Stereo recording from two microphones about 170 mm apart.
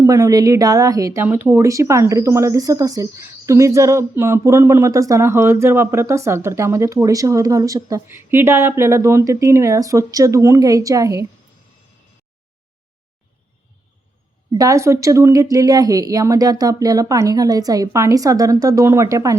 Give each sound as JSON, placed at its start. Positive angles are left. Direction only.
{"t": 0.0, "sound": "a woman's voice", "side_deg": -20}
{"t": 14.5, "sound": "speech", "side_deg": -20}